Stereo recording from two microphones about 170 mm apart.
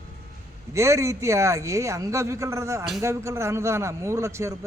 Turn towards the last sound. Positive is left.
turn(degrees=-15)  # may be behind; listen again after turning